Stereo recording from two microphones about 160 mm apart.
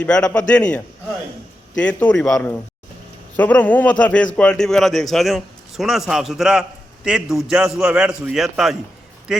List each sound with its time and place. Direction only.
0.0 s a man's voice: 5° left (ahead or behind)